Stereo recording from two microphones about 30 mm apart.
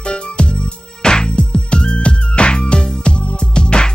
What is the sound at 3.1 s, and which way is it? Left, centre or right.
Music, left.